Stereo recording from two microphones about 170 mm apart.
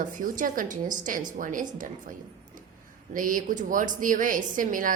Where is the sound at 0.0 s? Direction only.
50° right (ahead or behind).